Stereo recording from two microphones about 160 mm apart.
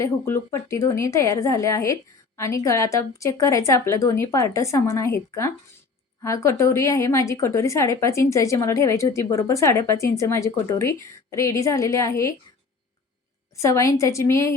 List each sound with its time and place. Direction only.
0.0 s a woman's voice: 15° left (ahead or behind)
13.6 s a woman's voice: 20° left (ahead or behind)